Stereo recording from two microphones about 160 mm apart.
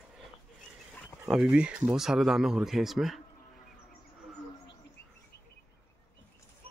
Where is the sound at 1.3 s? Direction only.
5° right (ahead or behind).